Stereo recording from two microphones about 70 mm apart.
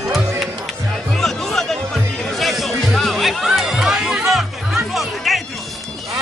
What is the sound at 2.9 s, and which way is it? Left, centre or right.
Music, centre.